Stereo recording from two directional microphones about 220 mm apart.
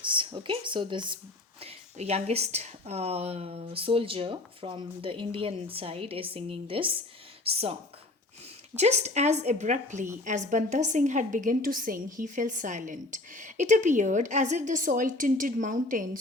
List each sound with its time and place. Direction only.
0.0 s a woman's voice: 20° right (ahead or behind); by 16.0 s 35° right (ahead or behind)